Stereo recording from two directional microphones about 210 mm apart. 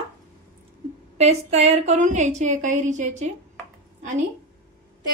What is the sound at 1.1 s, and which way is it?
A woman's voice, 30° right (ahead or behind).